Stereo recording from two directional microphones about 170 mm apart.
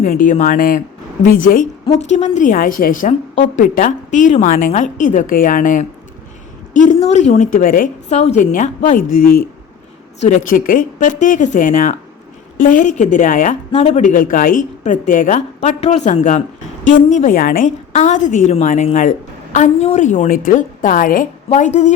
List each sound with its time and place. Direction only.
0.0 s a woman's voice: 50° left (ahead or behind)
2.0 s a woman's voice: 45° left (ahead or behind)